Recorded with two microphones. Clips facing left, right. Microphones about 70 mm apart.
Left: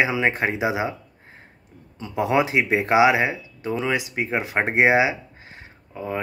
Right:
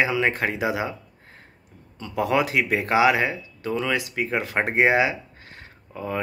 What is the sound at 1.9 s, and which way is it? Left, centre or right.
Speech, left.